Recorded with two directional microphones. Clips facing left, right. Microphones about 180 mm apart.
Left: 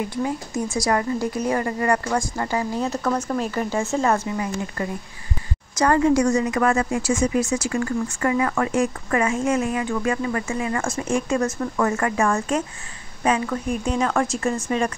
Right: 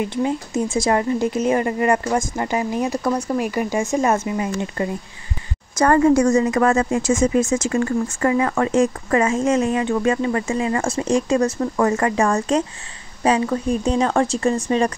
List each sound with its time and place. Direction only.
0.0 s speech: 20° right (ahead or behind)
5.8 s a woman's voice: 45° right (ahead or behind)
6.5 s speech: 35° right (ahead or behind)
7.0 s a woman's voice: 45° right (ahead or behind)
7.6 s speech: 30° right (ahead or behind)